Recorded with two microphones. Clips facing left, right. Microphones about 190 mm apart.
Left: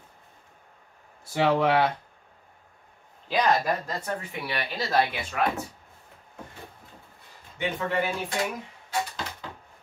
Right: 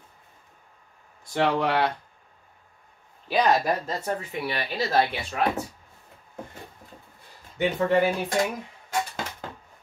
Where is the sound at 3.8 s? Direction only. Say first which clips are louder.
Right 3 dB; 25° right (ahead or behind).